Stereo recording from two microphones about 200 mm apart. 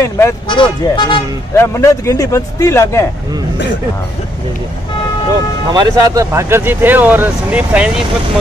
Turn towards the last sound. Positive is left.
turn(degrees=-5)  # may be behind; listen again after turning